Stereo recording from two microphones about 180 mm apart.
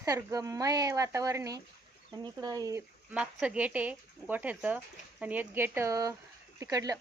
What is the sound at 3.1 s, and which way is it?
Speech, 5° right (ahead or behind).